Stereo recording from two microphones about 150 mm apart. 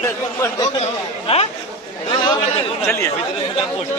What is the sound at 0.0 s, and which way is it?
Chatter, 20° left (ahead or behind).